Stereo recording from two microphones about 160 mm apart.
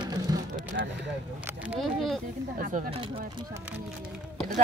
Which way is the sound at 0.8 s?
90° right.